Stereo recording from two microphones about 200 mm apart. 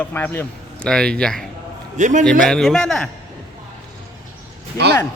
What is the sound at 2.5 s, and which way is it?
Speech, centre (ahead or behind).